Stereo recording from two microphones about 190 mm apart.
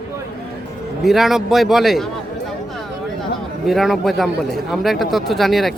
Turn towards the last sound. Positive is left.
turn(degrees=0)  # may be behind; listen again after turning